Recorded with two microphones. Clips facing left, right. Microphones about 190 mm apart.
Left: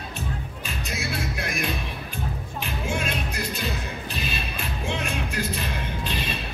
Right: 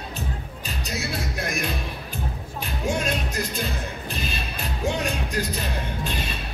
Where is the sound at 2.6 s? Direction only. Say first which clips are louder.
Right 3 dB; 40° right (ahead or behind).